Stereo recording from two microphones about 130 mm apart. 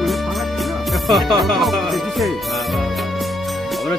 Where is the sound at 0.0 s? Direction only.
Centre (ahead or behind).